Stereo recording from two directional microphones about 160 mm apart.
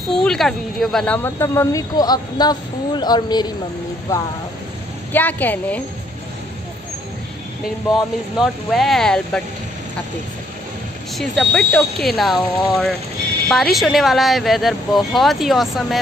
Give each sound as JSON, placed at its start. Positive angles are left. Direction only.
{"t": 0.1, "sound": "a woman's voice", "side_deg": 5}
{"t": 7.9, "sound": "speech", "side_deg": 0}
{"t": 11.1, "sound": "speech", "side_deg": 0}